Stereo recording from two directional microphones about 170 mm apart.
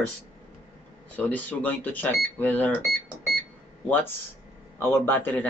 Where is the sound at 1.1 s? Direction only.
10° left (ahead or behind).